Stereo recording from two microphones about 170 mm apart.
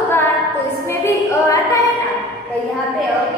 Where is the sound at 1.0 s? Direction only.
20° left (ahead or behind).